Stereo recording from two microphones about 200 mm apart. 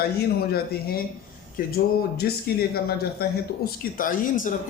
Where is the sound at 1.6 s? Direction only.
50° left (ahead or behind).